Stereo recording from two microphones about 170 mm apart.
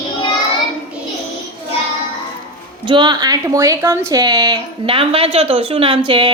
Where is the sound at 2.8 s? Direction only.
25° right (ahead or behind).